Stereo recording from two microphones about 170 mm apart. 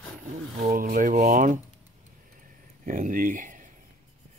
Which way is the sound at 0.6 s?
50° right (ahead or behind).